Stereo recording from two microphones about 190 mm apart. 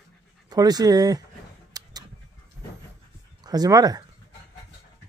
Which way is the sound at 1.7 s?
20° right (ahead or behind).